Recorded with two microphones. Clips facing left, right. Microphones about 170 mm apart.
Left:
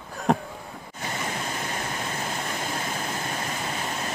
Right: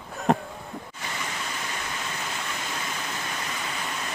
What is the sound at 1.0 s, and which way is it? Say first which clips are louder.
Waterfall: left 5 dB; 40° left (ahead or behind).